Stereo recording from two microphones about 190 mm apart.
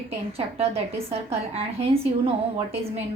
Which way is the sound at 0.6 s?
35° right (ahead or behind).